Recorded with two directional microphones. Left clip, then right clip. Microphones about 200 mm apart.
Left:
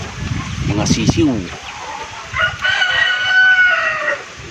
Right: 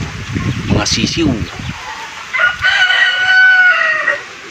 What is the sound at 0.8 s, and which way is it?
Speech, 10° left (ahead or behind).